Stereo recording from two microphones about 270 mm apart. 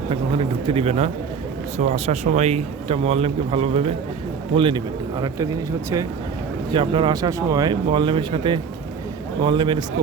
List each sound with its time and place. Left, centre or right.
0.1 s a man's voice: centre
6.7 s speech: centre